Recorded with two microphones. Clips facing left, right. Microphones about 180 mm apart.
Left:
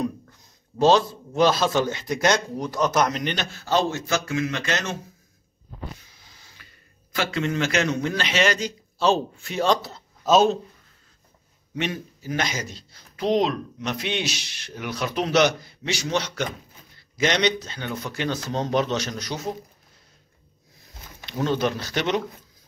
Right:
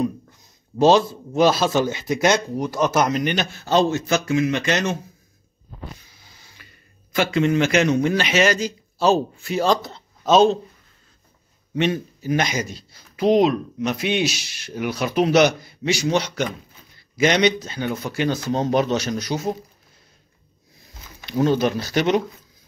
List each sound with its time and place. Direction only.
0.7 s speech: 10° right (ahead or behind)
7.2 s speech: 15° right (ahead or behind); by 10.6 s 5° left (ahead or behind)
11.7 s a man's voice: 25° right (ahead or behind)
12.3 s speech: 15° right (ahead or behind)
21.3 s speech: 10° right (ahead or behind)